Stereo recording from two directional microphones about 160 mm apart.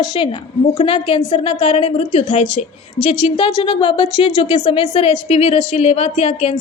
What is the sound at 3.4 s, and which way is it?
A woman's voice, 30° left (ahead or behind).